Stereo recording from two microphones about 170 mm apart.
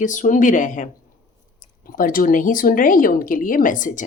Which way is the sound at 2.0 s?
55° left (ahead or behind).